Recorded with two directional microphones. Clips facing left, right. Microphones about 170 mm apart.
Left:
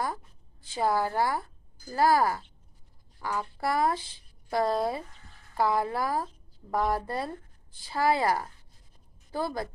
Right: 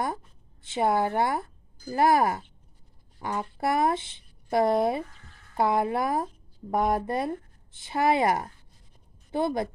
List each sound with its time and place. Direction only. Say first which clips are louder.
0.0 s speech: right 2 dB; 25° right (ahead or behind)